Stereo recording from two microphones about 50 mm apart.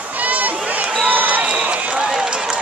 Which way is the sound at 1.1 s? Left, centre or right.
Right.